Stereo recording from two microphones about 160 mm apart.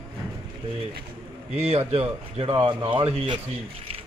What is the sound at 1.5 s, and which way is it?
Speech, 40° right (ahead or behind).